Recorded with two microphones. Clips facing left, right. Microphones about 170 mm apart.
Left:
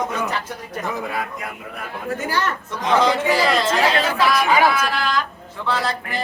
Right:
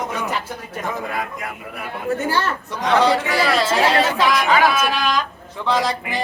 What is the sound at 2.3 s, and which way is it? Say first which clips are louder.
Speech: left 1 dB; 30° right (ahead or behind).